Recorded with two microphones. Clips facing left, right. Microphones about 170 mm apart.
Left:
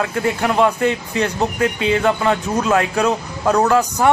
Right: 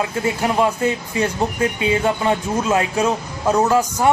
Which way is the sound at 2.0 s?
20° right (ahead or behind).